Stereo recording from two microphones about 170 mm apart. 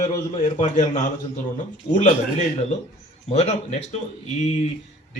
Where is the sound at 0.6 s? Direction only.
45° left (ahead or behind).